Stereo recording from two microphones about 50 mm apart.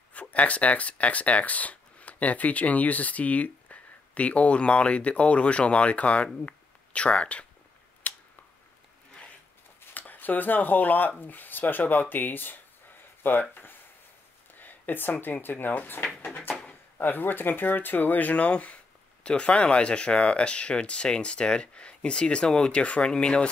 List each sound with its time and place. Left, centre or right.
0.1 s speech: left
8.0 s a sound: left
9.8 s speech: left; by 23.5 s centre